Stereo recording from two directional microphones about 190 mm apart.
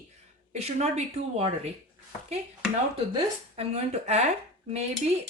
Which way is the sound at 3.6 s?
35° right (ahead or behind).